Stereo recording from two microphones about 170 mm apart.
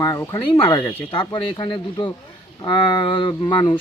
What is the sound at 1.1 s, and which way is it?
Speech, 25° left (ahead or behind).